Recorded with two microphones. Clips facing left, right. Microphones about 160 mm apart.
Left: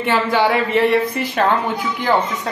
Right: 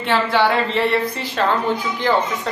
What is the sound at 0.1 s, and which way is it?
Speech, 10° left (ahead or behind).